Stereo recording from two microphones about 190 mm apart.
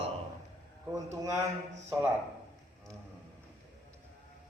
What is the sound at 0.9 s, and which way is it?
Speech, 20° right (ahead or behind).